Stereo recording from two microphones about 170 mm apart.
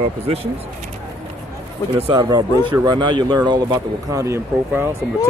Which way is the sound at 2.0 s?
25° right (ahead or behind).